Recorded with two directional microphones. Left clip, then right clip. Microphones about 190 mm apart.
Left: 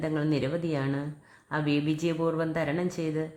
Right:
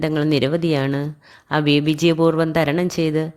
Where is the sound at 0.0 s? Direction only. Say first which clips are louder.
Right 10 dB; 40° right (ahead or behind).